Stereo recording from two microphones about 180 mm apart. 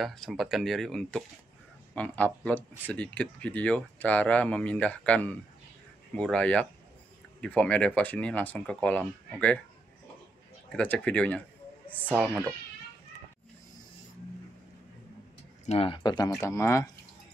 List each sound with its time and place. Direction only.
0.0 s speech: centre (ahead or behind)
10.7 s speech: 5° left (ahead or behind)
12.1 s speech: 10° right (ahead or behind)
15.6 s speech: 35° left (ahead or behind); by 16.9 s 15° left (ahead or behind)